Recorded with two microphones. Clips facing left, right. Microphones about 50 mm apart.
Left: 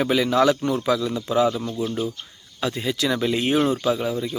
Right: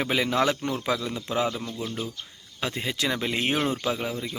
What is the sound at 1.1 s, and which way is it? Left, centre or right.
Speech, centre.